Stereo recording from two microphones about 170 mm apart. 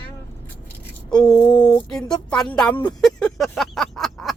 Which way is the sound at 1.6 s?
5° left (ahead or behind).